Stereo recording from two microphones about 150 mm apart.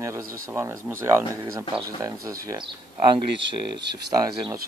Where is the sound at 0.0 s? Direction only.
20° right (ahead or behind).